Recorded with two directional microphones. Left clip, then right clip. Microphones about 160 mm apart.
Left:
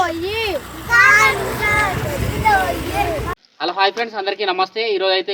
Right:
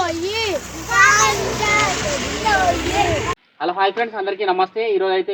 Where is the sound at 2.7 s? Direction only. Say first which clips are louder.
Right 2 dB; 70° left (ahead or behind).